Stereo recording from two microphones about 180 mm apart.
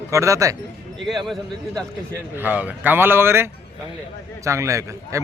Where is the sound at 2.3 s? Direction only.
10° right (ahead or behind).